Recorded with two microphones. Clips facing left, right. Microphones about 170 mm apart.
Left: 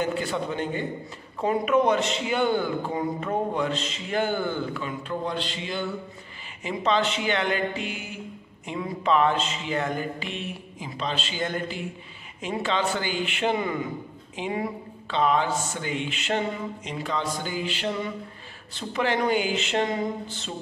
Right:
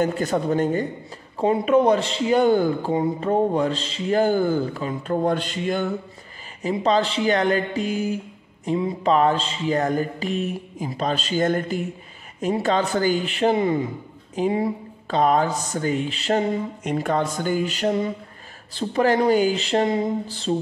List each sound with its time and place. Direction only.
0.0 s speech: 45° right (ahead or behind)
1.4 s a man's voice: 30° right (ahead or behind); by 5.9 s 50° right (ahead or behind)
6.6 s a man's voice: 35° right (ahead or behind)
16.8 s a man's voice: 50° right (ahead or behind); by 20.5 s 35° right (ahead or behind)